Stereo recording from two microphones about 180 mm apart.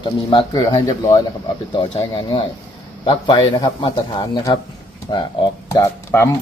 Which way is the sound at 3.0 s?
25° left (ahead or behind).